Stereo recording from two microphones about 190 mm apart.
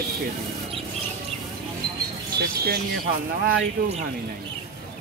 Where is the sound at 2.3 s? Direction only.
55° right (ahead or behind).